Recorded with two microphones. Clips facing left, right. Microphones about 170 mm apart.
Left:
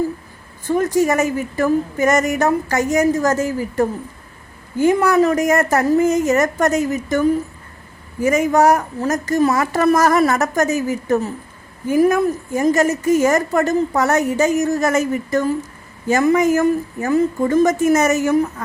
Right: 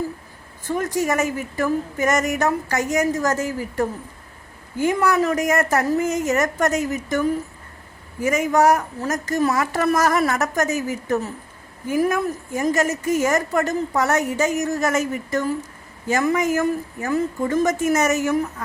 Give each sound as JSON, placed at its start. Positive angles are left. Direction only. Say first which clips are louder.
{"t": 0.7, "sound": "a woman's voice", "louder": "left 6 dB", "side_deg": 30}
{"t": 5.0, "sound": "a woman's voice", "louder": "left 5 dB", "side_deg": 30}
{"t": 8.2, "sound": "a woman's voice", "louder": "left 3 dB", "side_deg": 30}